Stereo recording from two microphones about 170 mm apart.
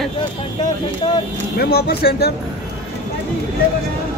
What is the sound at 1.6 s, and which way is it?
Speech, 70° left (ahead or behind).